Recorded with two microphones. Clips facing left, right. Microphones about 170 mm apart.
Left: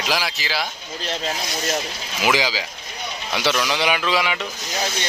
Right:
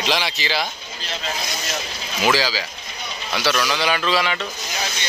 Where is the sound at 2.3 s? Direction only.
20° left (ahead or behind).